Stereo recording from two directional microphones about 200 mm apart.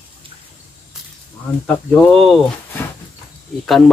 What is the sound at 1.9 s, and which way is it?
Speech, centre (ahead or behind).